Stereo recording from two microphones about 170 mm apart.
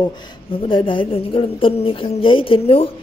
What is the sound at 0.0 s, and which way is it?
A woman's voice, 25° left (ahead or behind).